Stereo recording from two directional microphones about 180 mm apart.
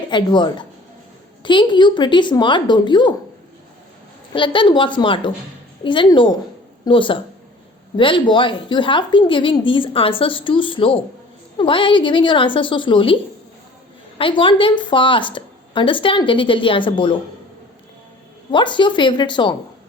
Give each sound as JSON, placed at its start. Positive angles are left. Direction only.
{"t": 0.1, "sound": "a woman's voice", "side_deg": 25}
{"t": 4.4, "sound": "a woman's voice", "side_deg": 25}
{"t": 14.2, "sound": "a woman's voice", "side_deg": 30}
{"t": 18.5, "sound": "a woman's voice", "side_deg": 25}